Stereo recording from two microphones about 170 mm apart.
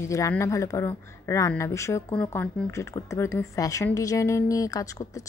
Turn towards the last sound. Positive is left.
turn(degrees=20)  # may be behind; listen again after turning